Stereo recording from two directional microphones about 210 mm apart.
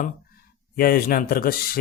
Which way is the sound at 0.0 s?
45° left (ahead or behind).